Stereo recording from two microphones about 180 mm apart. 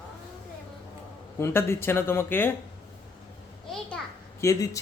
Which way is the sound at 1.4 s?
15° left (ahead or behind).